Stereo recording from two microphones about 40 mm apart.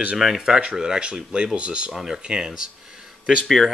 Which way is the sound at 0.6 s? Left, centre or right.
Right.